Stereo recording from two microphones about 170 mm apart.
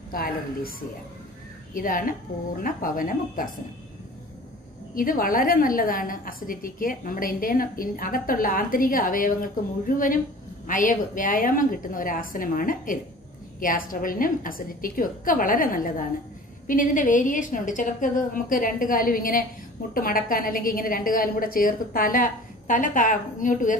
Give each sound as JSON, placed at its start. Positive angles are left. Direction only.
{"t": 0.1, "sound": "a woman's voice", "side_deg": 60}
{"t": 4.9, "sound": "a woman's voice", "side_deg": 55}